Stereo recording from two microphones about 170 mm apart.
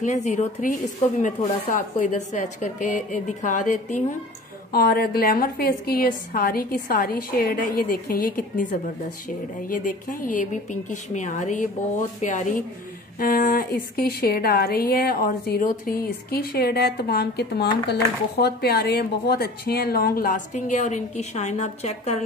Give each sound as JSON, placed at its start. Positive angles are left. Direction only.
{"t": 0.0, "sound": "speech", "side_deg": 45}
{"t": 4.7, "sound": "a woman's voice", "side_deg": 65}
{"t": 9.7, "sound": "a woman's voice", "side_deg": 50}